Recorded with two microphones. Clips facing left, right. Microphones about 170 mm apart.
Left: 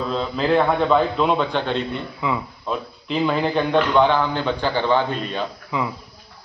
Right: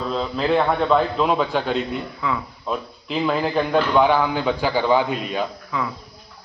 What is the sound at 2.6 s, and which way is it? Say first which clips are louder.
A man's voice: even; centre (ahead or behind).